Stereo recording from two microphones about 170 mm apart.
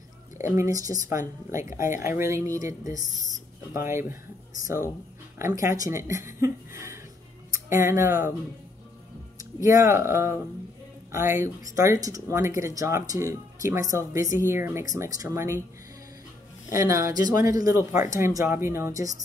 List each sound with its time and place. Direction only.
0.6 s speech: 20° right (ahead or behind)
5.4 s speech: 20° right (ahead or behind)
9.4 s speech: 20° right (ahead or behind)
16.7 s a man's voice: 20° right (ahead or behind)